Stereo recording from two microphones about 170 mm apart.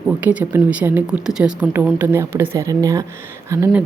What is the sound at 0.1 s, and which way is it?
Speech, 10° right (ahead or behind).